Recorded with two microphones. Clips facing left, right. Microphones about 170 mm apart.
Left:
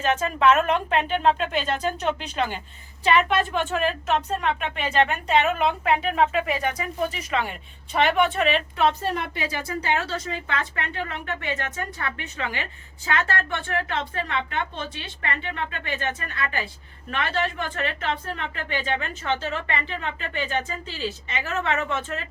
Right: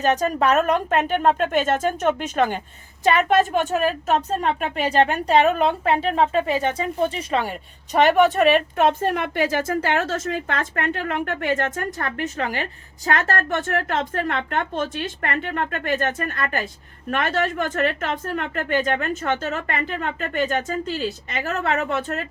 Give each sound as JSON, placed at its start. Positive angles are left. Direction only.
{"t": 0.0, "sound": "a woman's voice", "side_deg": -40}
{"t": 7.9, "sound": "speech", "side_deg": -40}